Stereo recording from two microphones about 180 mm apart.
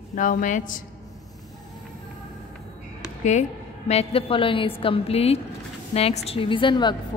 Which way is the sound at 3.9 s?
35° left (ahead or behind).